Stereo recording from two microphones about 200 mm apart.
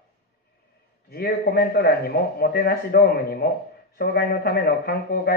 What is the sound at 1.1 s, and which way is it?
A man's voice, 50° left (ahead or behind).